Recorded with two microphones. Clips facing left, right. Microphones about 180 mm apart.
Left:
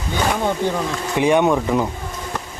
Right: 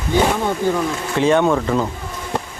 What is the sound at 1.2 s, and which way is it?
Speech, 15° left (ahead or behind).